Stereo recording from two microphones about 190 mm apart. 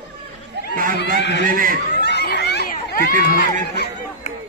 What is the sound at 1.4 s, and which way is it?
Speech, 45° right (ahead or behind).